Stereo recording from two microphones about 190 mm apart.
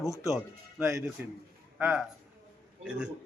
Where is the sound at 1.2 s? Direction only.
10° right (ahead or behind).